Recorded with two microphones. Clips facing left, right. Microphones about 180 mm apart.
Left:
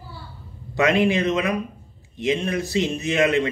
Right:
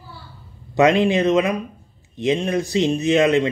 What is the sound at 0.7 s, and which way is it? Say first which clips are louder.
Speech: right 3 dB; 20° right (ahead or behind).